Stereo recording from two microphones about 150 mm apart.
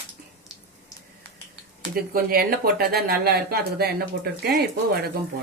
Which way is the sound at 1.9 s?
85° right.